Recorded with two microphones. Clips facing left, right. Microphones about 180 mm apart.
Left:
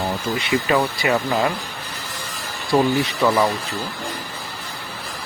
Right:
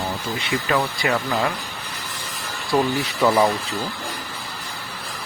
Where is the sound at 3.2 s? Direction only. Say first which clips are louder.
Right 2 dB; 10° right (ahead or behind).